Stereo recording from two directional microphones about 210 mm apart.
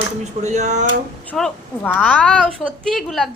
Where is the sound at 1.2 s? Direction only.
5° left (ahead or behind).